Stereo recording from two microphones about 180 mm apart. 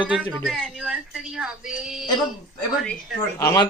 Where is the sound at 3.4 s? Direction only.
20° left (ahead or behind).